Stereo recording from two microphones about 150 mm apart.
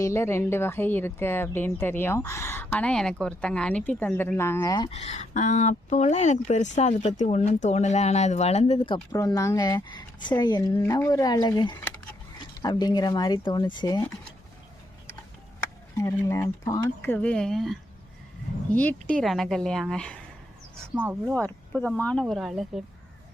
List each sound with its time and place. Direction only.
0.0 s a woman's voice: 20° left (ahead or behind)
4.9 s speech: 45° left (ahead or behind)
9.1 s speech: 20° left (ahead or behind)
16.0 s speech: 20° left (ahead or behind)
17.1 s a woman's voice: 5° left (ahead or behind)
20.9 s speech: 15° right (ahead or behind)
21.3 s a woman's voice: 5° left (ahead or behind)